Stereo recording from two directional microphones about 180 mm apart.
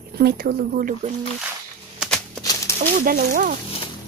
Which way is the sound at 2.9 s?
55° right (ahead or behind).